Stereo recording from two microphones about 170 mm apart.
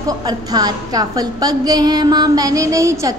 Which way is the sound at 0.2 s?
25° right (ahead or behind).